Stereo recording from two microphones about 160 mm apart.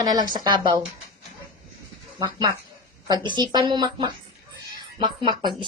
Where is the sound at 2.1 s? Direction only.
30° right (ahead or behind).